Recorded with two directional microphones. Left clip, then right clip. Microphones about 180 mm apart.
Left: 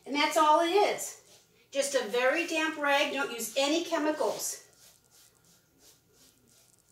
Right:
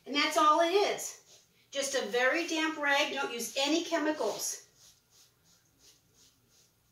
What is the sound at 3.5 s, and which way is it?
Speech, 5° right (ahead or behind).